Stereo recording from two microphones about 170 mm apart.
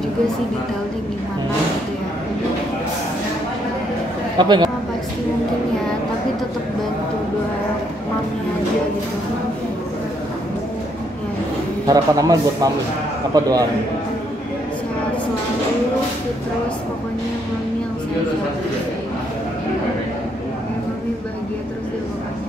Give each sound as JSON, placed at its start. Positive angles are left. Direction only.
{"t": 4.4, "sound": "a man's voice", "side_deg": -25}
{"t": 11.8, "sound": "a man's voice", "side_deg": -20}